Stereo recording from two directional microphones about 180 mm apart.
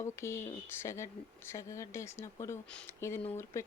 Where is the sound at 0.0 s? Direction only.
15° left (ahead or behind).